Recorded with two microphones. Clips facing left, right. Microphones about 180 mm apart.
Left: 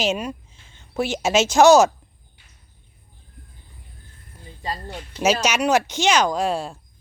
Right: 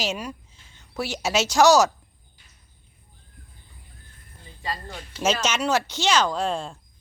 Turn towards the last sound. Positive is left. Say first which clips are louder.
# left 3 dB
turn(degrees=10)  # may be behind; listen again after turning